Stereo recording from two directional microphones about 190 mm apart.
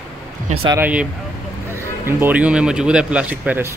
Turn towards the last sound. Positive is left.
turn(degrees=-10)  # may be behind; listen again after turning